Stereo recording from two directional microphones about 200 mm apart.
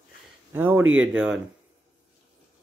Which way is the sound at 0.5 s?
10° right (ahead or behind).